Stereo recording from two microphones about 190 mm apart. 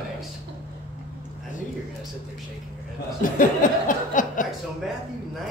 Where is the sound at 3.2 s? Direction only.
45° left (ahead or behind).